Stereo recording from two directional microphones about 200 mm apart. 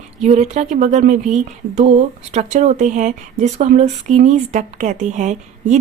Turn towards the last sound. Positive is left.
turn(degrees=-35)  # may be behind; listen again after turning